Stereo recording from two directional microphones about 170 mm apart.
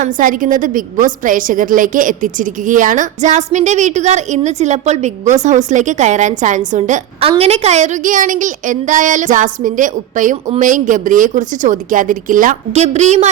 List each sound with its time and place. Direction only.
0.0 s a woman's voice: 50° right (ahead or behind)